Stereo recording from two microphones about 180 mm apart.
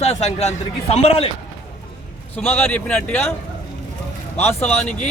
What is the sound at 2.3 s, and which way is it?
Speech, 10° left (ahead or behind).